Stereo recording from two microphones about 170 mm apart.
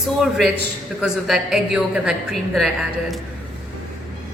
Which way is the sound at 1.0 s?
Centre (ahead or behind).